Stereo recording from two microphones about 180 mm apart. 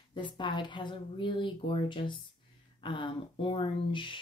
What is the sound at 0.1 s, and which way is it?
Speech, 25° left (ahead or behind).